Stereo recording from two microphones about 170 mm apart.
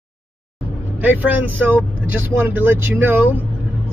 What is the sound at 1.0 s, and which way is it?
Speech, 10° right (ahead or behind).